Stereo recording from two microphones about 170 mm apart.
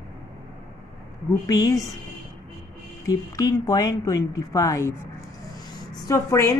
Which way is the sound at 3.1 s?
20° left (ahead or behind).